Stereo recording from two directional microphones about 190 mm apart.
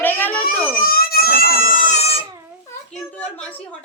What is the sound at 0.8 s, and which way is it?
Crying, 50° left (ahead or behind).